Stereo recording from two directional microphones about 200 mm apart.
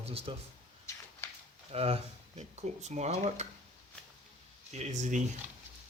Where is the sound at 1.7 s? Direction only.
30° right (ahead or behind).